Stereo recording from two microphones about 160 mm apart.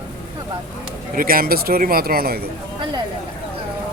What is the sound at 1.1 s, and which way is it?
Speech, 65° right (ahead or behind).